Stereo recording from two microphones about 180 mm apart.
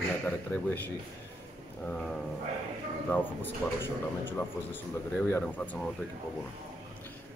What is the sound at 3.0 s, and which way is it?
Speech, 10° left (ahead or behind).